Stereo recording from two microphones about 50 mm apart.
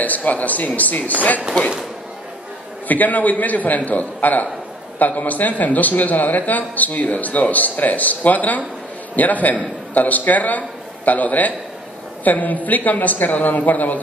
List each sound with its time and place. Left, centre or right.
0.0 s a man's voice: left
2.9 s a man's voice: left